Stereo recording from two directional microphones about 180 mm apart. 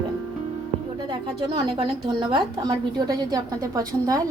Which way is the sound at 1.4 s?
25° right (ahead or behind).